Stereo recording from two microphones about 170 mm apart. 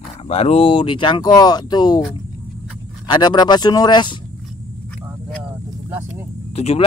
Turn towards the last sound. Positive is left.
turn(degrees=40)  # may be behind; listen again after turning